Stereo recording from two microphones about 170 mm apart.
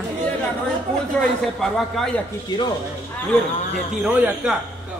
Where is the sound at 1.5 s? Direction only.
Centre (ahead or behind).